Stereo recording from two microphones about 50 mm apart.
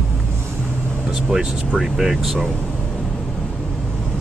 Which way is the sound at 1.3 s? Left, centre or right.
Centre.